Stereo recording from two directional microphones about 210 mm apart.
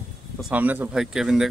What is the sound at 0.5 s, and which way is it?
Speech, 10° right (ahead or behind).